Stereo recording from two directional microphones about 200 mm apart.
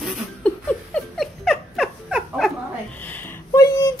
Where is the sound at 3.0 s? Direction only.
10° left (ahead or behind).